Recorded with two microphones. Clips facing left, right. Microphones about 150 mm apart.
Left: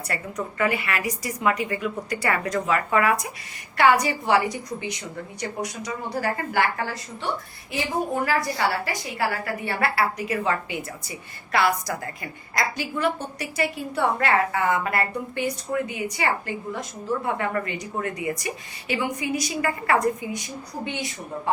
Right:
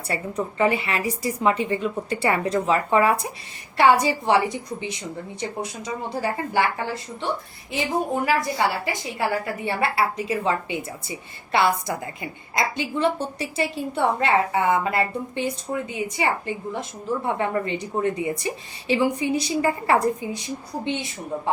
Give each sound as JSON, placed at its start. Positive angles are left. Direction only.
{"t": 0.1, "sound": "a woman's voice", "side_deg": -25}